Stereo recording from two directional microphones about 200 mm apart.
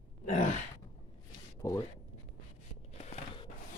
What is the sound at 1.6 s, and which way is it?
Speech, 15° left (ahead or behind).